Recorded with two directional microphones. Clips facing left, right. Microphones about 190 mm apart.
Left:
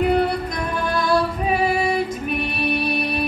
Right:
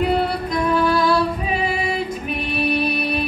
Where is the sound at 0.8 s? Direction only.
50° left (ahead or behind).